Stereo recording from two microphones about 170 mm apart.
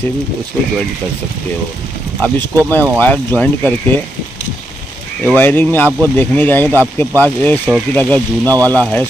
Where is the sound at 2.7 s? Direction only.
10° left (ahead or behind).